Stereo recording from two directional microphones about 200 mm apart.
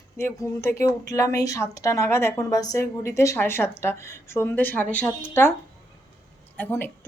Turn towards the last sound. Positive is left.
turn(degrees=10)  # may be behind; listen again after turning